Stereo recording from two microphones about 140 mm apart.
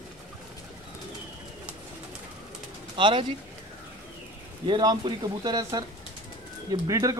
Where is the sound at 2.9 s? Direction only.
35° right (ahead or behind).